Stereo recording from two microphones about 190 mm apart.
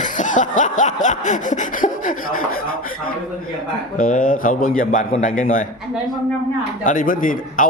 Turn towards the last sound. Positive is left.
turn(degrees=45)  # may be behind; listen again after turning